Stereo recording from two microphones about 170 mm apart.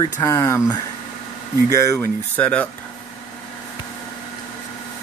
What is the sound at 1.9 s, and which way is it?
Speech, 10° left (ahead or behind).